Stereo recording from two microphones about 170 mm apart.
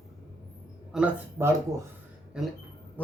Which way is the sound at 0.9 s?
10° right (ahead or behind).